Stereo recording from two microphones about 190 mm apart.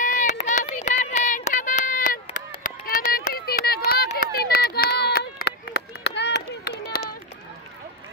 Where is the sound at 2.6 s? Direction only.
50° left (ahead or behind).